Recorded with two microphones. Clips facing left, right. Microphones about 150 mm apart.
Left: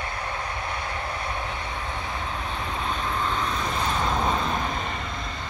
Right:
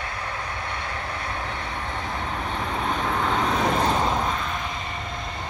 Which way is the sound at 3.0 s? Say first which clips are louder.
Right 4 dB; 70° right (ahead or behind).